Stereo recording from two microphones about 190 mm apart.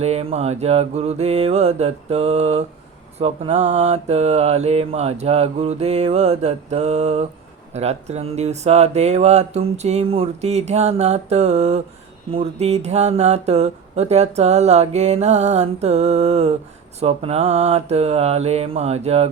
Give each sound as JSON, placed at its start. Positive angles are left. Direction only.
{"t": 0.0, "sound": "speech", "side_deg": -30}